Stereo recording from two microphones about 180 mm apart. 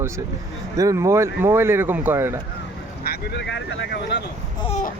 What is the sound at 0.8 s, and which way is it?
Speech, 15° right (ahead or behind).